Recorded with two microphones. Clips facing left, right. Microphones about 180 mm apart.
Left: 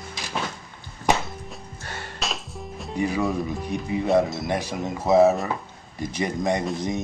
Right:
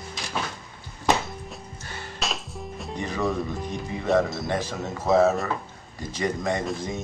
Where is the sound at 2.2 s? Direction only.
Centre (ahead or behind).